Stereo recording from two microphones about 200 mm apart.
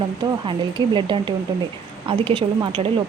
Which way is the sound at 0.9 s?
25° right (ahead or behind).